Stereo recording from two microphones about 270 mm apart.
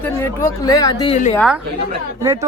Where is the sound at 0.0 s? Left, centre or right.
Centre.